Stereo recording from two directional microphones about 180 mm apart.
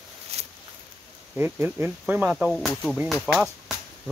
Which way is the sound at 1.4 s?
10° right (ahead or behind).